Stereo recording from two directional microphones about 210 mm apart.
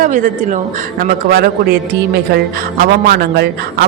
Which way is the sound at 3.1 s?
50° right (ahead or behind).